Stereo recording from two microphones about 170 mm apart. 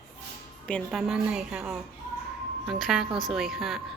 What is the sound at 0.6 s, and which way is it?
A woman's voice, 5° left (ahead or behind).